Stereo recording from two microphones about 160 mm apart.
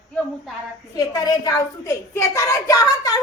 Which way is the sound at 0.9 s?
25° left (ahead or behind).